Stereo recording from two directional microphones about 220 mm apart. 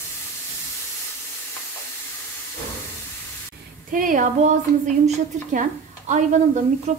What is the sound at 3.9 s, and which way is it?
A woman's voice, 40° right (ahead or behind).